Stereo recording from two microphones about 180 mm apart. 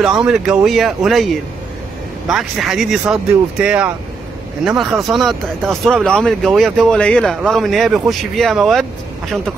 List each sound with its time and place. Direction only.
0.0 s speech: 5° right (ahead or behind)